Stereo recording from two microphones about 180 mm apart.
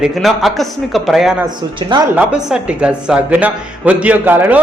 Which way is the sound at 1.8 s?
25° right (ahead or behind).